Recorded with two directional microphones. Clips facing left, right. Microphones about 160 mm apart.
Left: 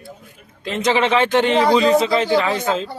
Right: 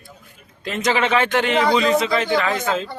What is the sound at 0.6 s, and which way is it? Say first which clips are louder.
Speech: left 2 dB; 25° left (ahead or behind).